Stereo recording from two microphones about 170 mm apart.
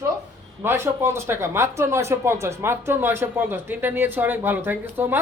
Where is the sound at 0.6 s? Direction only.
15° right (ahead or behind).